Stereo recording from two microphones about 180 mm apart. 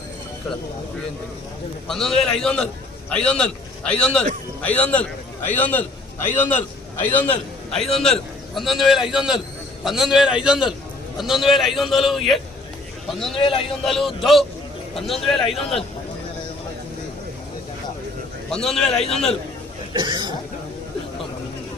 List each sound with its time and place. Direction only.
1.9 s a man's voice: centre (ahead or behind)
13.3 s a man's voice: 30° left (ahead or behind)
13.8 s a man's voice: centre (ahead or behind)
18.5 s a man's voice: 5° left (ahead or behind)
19.9 s speech: 25° right (ahead or behind)